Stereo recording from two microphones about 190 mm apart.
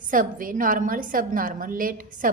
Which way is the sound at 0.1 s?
45° right (ahead or behind).